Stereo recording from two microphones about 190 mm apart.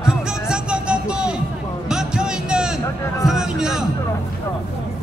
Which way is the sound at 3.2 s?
Centre (ahead or behind).